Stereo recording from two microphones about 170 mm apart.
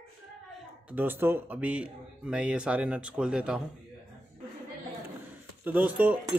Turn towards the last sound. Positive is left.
turn(degrees=-10)  # may be behind; listen again after turning